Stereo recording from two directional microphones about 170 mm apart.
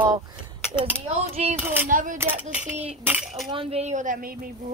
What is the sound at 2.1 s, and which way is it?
Speech, 10° right (ahead or behind).